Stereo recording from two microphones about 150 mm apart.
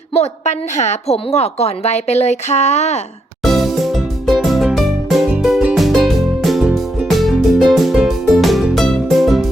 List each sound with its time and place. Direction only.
0.1 s a woman's voice: 50° left (ahead or behind)
3.4 s music: centre (ahead or behind)